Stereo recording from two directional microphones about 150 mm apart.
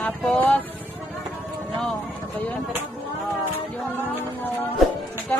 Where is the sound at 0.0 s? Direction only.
10° left (ahead or behind).